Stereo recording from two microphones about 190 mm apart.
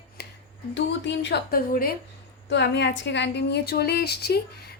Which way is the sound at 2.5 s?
70° left (ahead or behind).